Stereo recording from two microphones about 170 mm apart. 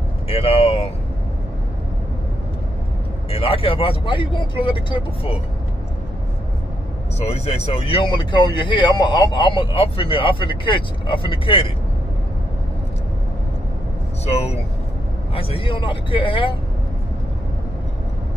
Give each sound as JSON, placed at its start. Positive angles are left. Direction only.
{"t": 0.3, "sound": "speech", "side_deg": 35}
{"t": 3.3, "sound": "speech", "side_deg": 35}
{"t": 7.2, "sound": "speech", "side_deg": 35}
{"t": 14.2, "sound": "speech", "side_deg": 40}